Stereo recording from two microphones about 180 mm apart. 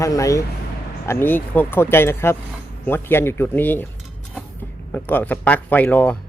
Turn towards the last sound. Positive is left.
turn(degrees=10)  # may be behind; listen again after turning